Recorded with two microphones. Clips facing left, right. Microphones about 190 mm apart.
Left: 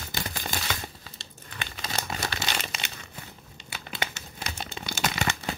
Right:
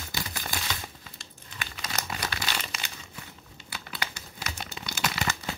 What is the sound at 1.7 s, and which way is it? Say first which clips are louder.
Crumpling: left 2 dB; 30° left (ahead or behind).